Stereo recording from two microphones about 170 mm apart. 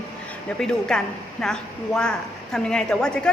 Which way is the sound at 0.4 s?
5° left (ahead or behind).